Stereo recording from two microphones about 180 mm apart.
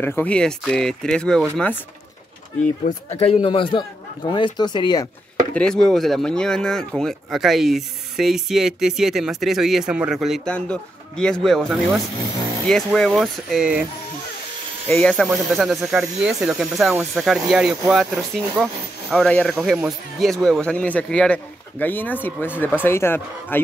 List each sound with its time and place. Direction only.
0.0 s speech: 10° left (ahead or behind)
3.1 s speech: 35° left (ahead or behind)
5.5 s speech: 5° left (ahead or behind)
14.9 s speech: 5° left (ahead or behind)